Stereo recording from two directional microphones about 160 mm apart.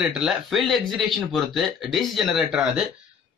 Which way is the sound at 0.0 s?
5° right (ahead or behind).